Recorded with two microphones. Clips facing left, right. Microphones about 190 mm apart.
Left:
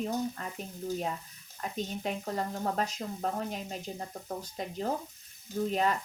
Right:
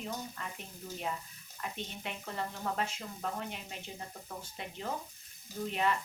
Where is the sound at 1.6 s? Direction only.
40° left (ahead or behind).